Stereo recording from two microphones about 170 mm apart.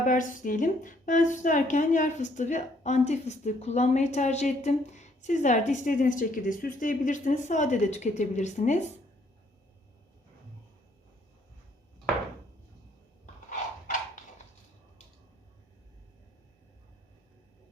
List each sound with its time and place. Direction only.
0.0 s a woman's voice: 50° left (ahead or behind)